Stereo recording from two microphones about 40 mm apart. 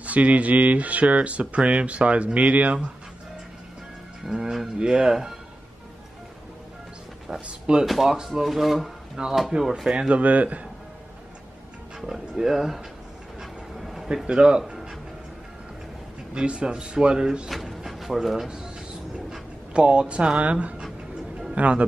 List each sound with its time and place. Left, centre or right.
0.0 s speech: right
4.3 s speech: centre
7.3 s speech: right
7.8 s speech: centre
10.1 s speech: right
12.1 s speech: centre
13.4 s vehicle: centre
14.0 s speech: centre
16.3 s speech: right
17.5 s speech: centre
19.7 s speech: right